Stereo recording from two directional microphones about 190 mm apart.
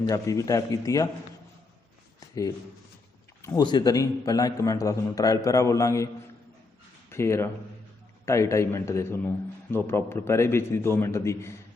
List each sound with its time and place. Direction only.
0.0 s a man's voice: 15° left (ahead or behind)
3.4 s a man's voice: 20° left (ahead or behind)
7.1 s a man's voice: 15° left (ahead or behind)